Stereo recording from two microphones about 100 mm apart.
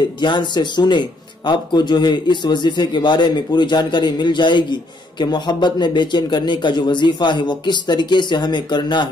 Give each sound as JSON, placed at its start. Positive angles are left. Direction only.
{"t": 0.2, "sound": "speech", "side_deg": 50}